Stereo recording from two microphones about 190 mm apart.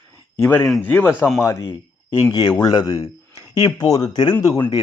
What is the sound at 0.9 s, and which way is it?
Speech, 10° left (ahead or behind).